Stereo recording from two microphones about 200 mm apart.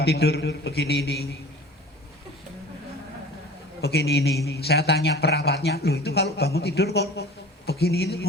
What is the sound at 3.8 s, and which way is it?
A man's voice, 55° left (ahead or behind).